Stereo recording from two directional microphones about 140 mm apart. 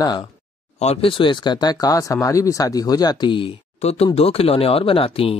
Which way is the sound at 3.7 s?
50° left (ahead or behind).